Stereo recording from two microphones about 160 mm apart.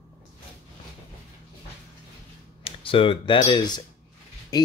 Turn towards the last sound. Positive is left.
turn(degrees=25)  # may be behind; listen again after turning